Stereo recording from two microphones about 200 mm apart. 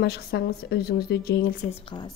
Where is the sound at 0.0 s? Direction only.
55° left (ahead or behind).